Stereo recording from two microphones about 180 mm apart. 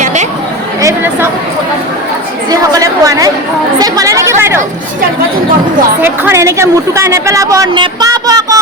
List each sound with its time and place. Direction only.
0.0 s chatter: 40° right (ahead or behind)
0.8 s chatter: 15° right (ahead or behind)
2.5 s chatter: 20° right (ahead or behind)
6.0 s a woman's voice: 10° right (ahead or behind)
7.7 s a sound: 25° right (ahead or behind)